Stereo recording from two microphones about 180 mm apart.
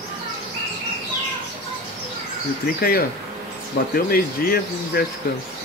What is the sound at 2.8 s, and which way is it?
Speech, 55° left (ahead or behind).